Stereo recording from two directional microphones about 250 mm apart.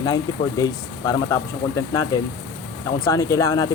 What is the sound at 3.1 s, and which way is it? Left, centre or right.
Speech, centre.